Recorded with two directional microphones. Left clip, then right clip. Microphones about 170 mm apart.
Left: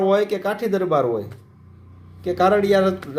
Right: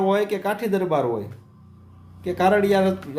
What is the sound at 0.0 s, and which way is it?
A man's voice, 15° right (ahead or behind).